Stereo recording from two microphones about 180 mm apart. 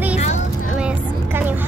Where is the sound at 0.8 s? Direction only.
5° right (ahead or behind).